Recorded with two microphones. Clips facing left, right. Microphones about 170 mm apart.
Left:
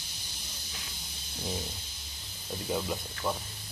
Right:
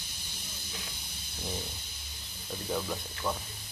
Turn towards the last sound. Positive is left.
turn(degrees=10)  # may be behind; listen again after turning